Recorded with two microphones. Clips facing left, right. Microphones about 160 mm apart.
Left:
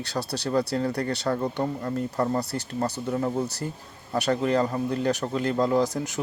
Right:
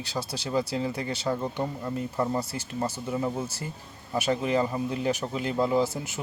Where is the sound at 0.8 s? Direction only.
70° left (ahead or behind).